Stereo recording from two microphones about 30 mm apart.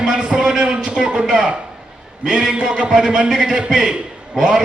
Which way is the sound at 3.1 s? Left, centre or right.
Right.